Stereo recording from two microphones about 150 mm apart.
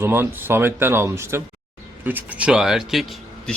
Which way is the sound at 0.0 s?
15° right (ahead or behind).